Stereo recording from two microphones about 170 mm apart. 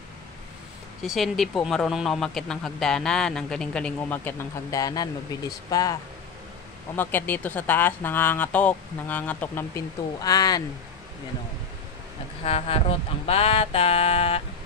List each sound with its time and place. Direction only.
1.0 s speech: centre (ahead or behind); by 5.9 s 20° left (ahead or behind)
7.0 s speech: 10° left (ahead or behind)
12.4 s a sound: 35° left (ahead or behind)